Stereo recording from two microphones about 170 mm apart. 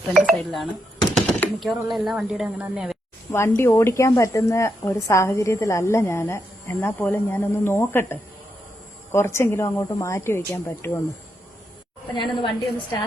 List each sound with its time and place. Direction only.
0.3 s speech: centre (ahead or behind)
3.3 s speech: 15° left (ahead or behind)
12.1 s a woman's voice: 30° left (ahead or behind)